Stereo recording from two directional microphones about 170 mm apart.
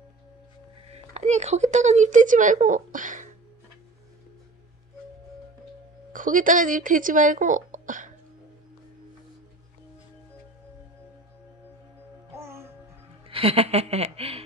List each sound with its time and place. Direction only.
0.8 s speech: 40° right (ahead or behind)
6.1 s speech: 50° right (ahead or behind)
12.4 s music: 15° right (ahead or behind)
13.3 s a sound: 35° right (ahead or behind)